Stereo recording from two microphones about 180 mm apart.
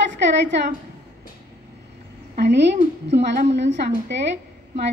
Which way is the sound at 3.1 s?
75° right (ahead or behind).